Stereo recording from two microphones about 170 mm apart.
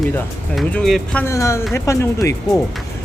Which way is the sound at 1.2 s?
15° left (ahead or behind).